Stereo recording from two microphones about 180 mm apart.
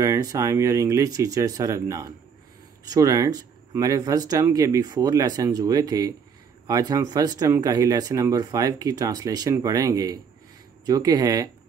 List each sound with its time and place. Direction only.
0.0 s speech: 20° right (ahead or behind)